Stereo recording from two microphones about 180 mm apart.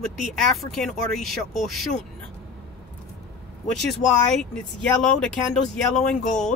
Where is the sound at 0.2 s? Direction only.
Centre (ahead or behind).